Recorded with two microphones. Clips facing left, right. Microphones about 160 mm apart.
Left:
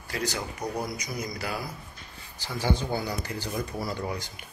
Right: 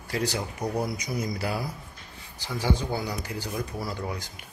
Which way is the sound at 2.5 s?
10° right (ahead or behind).